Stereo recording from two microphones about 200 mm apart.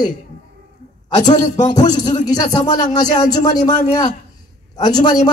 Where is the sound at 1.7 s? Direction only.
20° left (ahead or behind).